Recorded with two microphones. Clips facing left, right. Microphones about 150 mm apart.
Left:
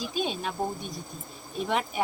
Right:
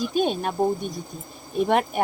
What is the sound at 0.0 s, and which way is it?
Speech, 55° right (ahead or behind).